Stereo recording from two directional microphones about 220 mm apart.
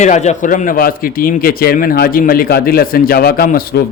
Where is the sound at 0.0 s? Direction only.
30° left (ahead or behind).